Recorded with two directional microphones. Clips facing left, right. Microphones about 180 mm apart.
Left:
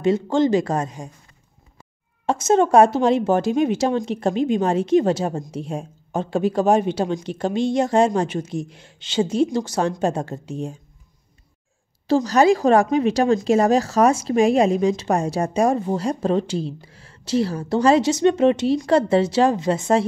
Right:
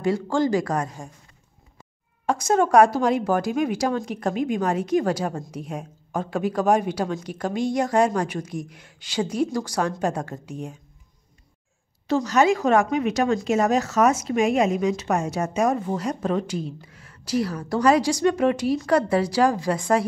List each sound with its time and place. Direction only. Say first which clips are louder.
0.0 s a woman's voice: left 4 dB; 20° left (ahead or behind)
2.2 s a woman's voice: left 3 dB; 25° left (ahead or behind)
12.1 s a woman's voice: left 4 dB; 35° left (ahead or behind)